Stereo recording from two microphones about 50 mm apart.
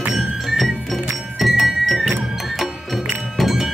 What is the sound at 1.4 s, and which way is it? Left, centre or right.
Music, centre.